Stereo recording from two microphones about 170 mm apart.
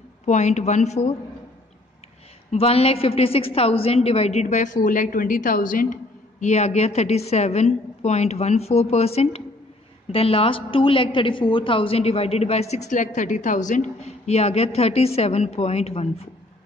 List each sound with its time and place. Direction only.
0.2 s speech: 45° left (ahead or behind)
2.5 s a woman's voice: 35° left (ahead or behind)